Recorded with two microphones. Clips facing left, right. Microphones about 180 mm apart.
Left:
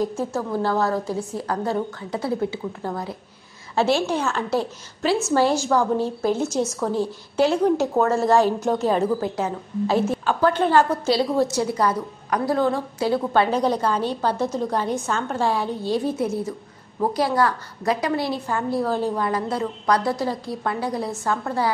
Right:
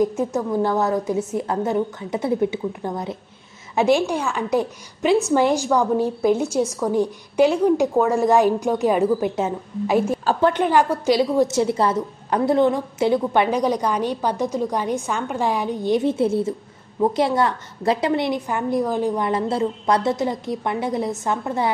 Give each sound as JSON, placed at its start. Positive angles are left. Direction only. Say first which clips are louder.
{"t": 0.0, "sound": "a woman's voice", "louder": "right 4 dB", "side_deg": -20}